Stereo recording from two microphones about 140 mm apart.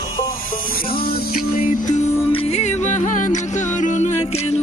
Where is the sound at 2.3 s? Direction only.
45° left (ahead or behind).